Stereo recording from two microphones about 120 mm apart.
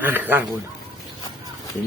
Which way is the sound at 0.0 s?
15° right (ahead or behind).